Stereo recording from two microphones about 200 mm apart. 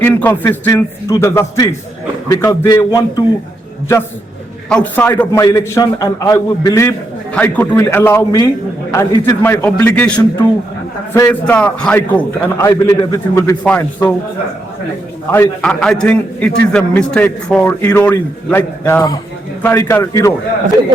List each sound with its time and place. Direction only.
0.0 s a man's voice: 10° left (ahead or behind)
4.7 s a man's voice: 10° left (ahead or behind)
15.3 s a man's voice: 10° left (ahead or behind)